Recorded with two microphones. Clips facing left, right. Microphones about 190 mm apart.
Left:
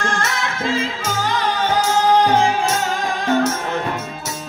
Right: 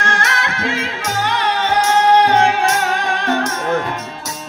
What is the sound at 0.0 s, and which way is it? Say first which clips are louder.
Music: right 1 dB; 65° right (ahead or behind).